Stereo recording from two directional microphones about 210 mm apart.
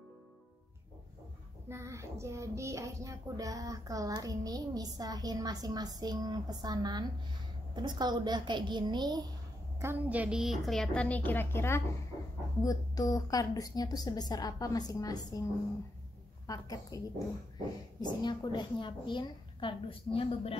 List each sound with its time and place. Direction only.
1.7 s a child's voice: 15° right (ahead or behind)
9.8 s a woman's voice: 10° right (ahead or behind); by 15.4 s 15° left (ahead or behind)
16.4 s a woman's voice: 15° left (ahead or behind)
18.0 s a woman's voice: 20° left (ahead or behind)